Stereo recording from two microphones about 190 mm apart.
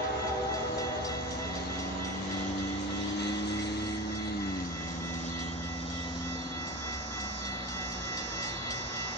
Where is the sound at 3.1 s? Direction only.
60° left (ahead or behind).